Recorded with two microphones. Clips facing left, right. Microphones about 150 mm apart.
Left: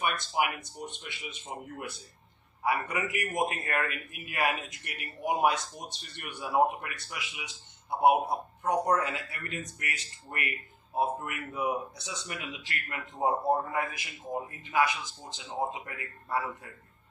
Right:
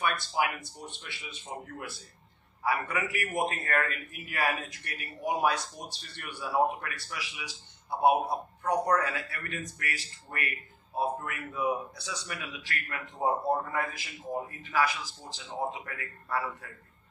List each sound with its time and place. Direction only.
0.0 s a man's voice: 20° left (ahead or behind)